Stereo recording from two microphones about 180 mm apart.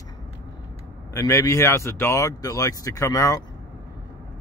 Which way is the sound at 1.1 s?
15° left (ahead or behind).